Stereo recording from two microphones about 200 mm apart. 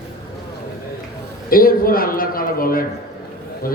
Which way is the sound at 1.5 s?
45° left (ahead or behind).